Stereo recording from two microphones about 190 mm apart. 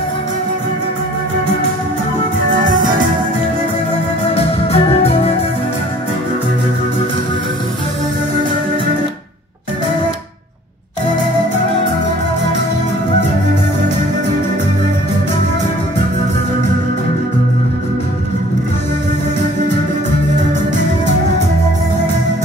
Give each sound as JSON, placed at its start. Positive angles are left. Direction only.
{"t": 2.5, "sound": "music", "side_deg": -45}
{"t": 4.4, "sound": "organ", "side_deg": 30}